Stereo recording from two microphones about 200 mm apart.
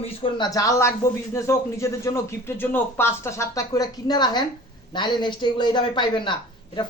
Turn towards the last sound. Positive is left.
turn(degrees=25)  # may be behind; listen again after turning